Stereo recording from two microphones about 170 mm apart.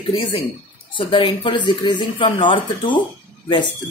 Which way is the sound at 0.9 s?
30° left (ahead or behind).